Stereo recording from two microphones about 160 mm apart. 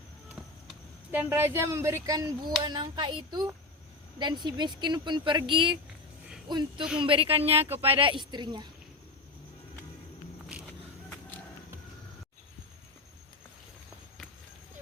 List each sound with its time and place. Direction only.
1.1 s a woman's voice: 15° right (ahead or behind)